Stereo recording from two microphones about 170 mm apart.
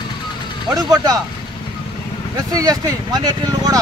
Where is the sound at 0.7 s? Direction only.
20° right (ahead or behind).